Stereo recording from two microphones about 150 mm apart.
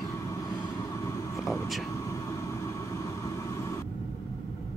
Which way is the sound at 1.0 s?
20° left (ahead or behind).